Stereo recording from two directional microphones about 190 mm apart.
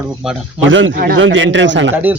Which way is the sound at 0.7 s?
80° right.